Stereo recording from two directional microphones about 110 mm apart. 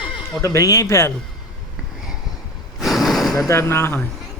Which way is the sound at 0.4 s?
30° left (ahead or behind).